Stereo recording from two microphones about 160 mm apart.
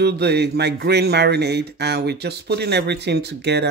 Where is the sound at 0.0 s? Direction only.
90° right.